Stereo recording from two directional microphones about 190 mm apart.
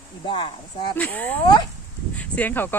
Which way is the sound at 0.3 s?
25° left (ahead or behind).